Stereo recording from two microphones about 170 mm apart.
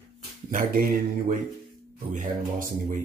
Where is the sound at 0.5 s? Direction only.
55° right (ahead or behind).